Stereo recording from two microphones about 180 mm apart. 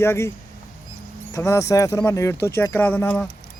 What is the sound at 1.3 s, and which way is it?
Speech, 15° left (ahead or behind).